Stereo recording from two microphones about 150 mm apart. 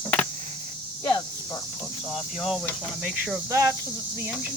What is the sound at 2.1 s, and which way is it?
Speech, centre (ahead or behind).